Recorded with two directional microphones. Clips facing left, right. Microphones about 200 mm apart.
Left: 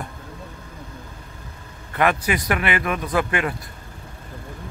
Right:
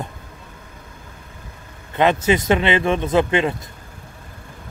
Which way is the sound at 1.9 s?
20° right (ahead or behind).